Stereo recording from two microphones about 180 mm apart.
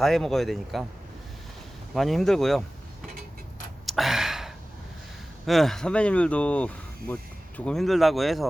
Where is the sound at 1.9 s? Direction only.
Centre (ahead or behind).